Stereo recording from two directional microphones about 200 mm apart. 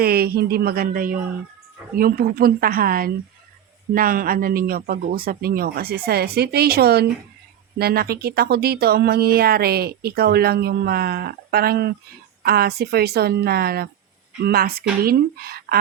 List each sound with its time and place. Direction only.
0.0 s speech: 50° right (ahead or behind)